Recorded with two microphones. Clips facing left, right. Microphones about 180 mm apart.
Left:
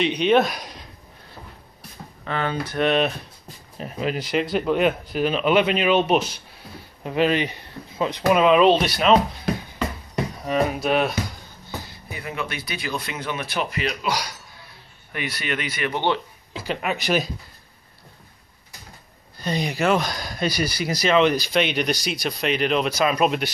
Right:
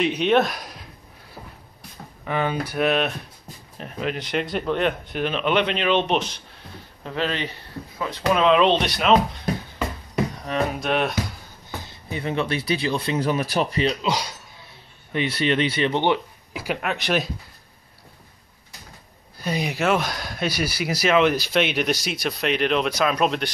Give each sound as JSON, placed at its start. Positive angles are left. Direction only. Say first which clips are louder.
{"t": 0.0, "sound": "speech", "louder": "left 1 dB", "side_deg": 0}
{"t": 2.2, "sound": "speech", "louder": "right 2 dB", "side_deg": -15}
{"t": 10.1, "sound": "speech", "louder": "left 1 dB", "side_deg": 5}
{"t": 11.8, "sound": "speech", "louder": "right 5 dB", "side_deg": -25}
{"t": 16.8, "sound": "speech", "louder": "left 2 dB", "side_deg": 0}
{"t": 19.4, "sound": "speech", "louder": "left 1 dB", "side_deg": -5}